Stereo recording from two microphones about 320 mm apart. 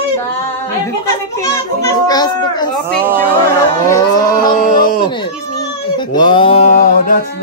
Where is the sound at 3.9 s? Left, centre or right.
Centre.